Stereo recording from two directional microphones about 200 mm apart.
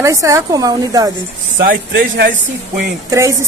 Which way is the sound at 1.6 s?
50° right (ahead or behind).